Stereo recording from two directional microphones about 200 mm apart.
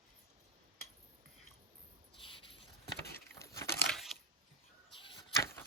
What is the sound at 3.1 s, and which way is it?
Patter, 15° left (ahead or behind).